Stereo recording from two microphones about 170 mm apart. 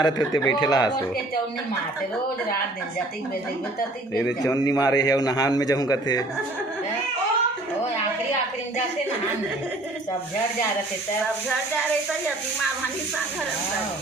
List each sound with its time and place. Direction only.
0.0 s a man's voice: 20° left (ahead or behind)
4.4 s a man's voice: 20° left (ahead or behind)